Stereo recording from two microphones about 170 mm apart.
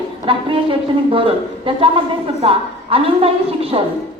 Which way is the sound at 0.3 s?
30° right (ahead or behind).